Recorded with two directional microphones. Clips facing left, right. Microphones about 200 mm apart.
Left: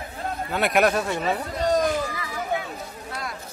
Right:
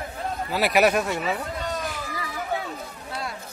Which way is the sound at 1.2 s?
40° left (ahead or behind).